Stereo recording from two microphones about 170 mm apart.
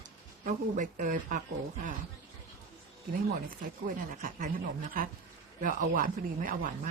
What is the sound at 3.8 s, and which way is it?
Speech, 55° right (ahead or behind).